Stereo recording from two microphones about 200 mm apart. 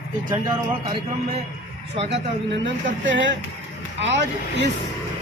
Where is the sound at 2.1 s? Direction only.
65° right (ahead or behind).